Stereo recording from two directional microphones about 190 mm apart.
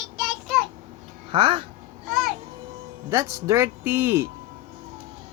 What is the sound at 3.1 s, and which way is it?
Speech, 15° right (ahead or behind).